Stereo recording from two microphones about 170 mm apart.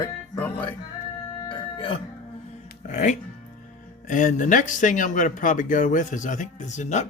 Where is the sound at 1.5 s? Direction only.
30° left (ahead or behind).